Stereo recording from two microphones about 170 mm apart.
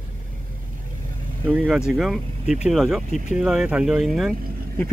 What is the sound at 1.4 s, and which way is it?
Speech, 10° right (ahead or behind).